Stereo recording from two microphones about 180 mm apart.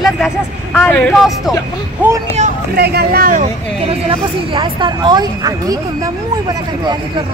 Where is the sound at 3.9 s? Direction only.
30° right (ahead or behind).